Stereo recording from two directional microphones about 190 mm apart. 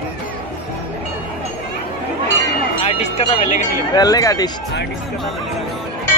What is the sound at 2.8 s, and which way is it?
Speech, 35° left (ahead or behind).